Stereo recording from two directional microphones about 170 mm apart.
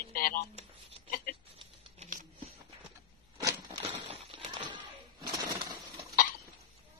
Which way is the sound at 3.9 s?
35° right (ahead or behind).